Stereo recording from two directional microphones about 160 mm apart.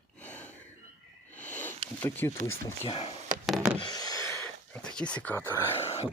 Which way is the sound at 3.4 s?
5° right (ahead or behind).